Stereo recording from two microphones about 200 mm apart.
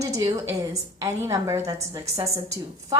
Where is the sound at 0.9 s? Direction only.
15° right (ahead or behind).